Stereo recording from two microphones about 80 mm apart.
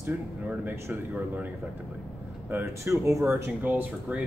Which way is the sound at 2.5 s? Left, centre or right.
Right.